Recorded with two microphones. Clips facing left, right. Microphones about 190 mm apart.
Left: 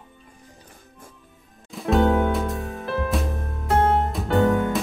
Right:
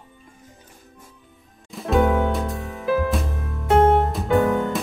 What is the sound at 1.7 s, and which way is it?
Music, centre (ahead or behind).